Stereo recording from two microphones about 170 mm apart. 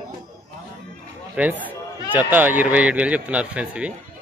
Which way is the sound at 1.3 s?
10° right (ahead or behind).